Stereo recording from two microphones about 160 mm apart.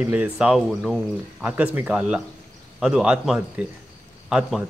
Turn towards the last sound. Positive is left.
turn(degrees=-5)  # may be behind; listen again after turning